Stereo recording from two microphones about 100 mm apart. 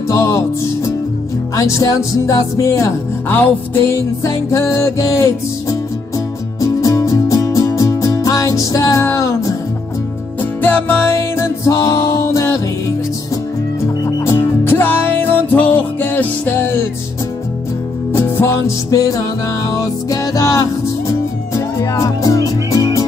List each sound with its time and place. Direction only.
0.1 s music: 30° left (ahead or behind)
1.5 s music: 35° left (ahead or behind)
14.0 s music: 25° left (ahead or behind)
18.1 s music: 25° left (ahead or behind)